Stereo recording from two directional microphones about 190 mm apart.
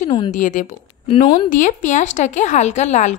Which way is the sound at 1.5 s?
40° left (ahead or behind).